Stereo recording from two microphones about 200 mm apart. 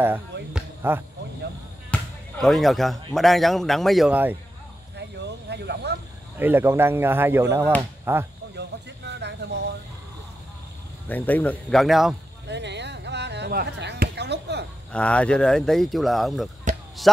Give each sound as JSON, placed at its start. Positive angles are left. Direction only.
{"t": 0.0, "sound": "speech", "side_deg": -5}
{"t": 4.9, "sound": "a sound", "side_deg": -55}
{"t": 6.3, "sound": "speech", "side_deg": -10}
{"t": 8.5, "sound": "a sound", "side_deg": -60}
{"t": 11.1, "sound": "speech", "side_deg": 10}
{"t": 12.4, "sound": "chop", "side_deg": -60}
{"t": 14.9, "sound": "speech", "side_deg": 5}
{"t": 16.7, "sound": "basketball bounce", "side_deg": -35}